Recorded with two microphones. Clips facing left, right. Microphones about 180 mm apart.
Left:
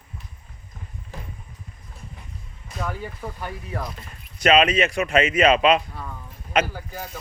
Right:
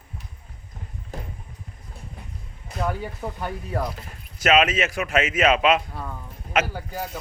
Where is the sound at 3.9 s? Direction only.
Centre (ahead or behind).